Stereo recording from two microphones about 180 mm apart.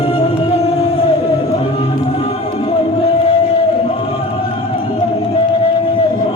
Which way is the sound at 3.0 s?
30° left (ahead or behind).